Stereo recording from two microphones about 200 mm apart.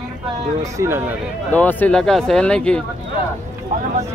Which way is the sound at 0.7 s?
10° right (ahead or behind).